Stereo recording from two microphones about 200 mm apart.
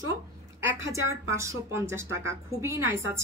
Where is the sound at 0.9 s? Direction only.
15° right (ahead or behind).